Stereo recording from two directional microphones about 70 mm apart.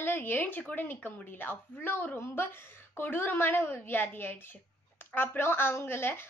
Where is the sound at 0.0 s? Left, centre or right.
Left.